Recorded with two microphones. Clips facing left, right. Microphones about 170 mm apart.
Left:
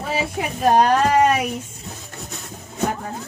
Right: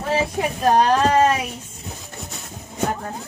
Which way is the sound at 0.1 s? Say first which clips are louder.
Right 3 dB; 5° left (ahead or behind).